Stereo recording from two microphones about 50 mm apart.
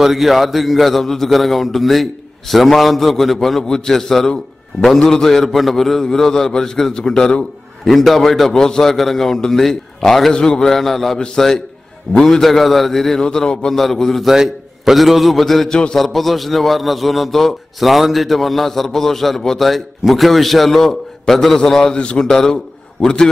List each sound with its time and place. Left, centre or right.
0.0 s a man's voice: centre
7.9 s a man's voice: centre
14.2 s a man's voice: centre
15.7 s a man's voice: centre
16.0 s a man's voice: centre
21.9 s a man's voice: left
22.2 s a man's voice: centre